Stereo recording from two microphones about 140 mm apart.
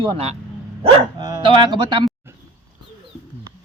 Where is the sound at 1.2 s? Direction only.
30° right (ahead or behind).